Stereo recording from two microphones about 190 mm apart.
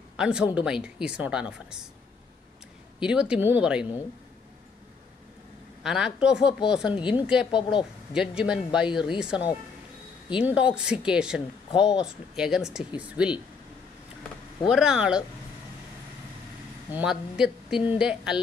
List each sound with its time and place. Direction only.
0.2 s speech: 5° right (ahead or behind)
3.0 s speech: 5° right (ahead or behind)
5.9 s speech: 5° right (ahead or behind)
6.9 s a woman's voice: 25° left (ahead or behind)
7.2 s speech: 5° right (ahead or behind)
10.3 s speech: 5° right (ahead or behind)
14.7 s speech: 5° right (ahead or behind)
16.9 s speech: 5° right (ahead or behind)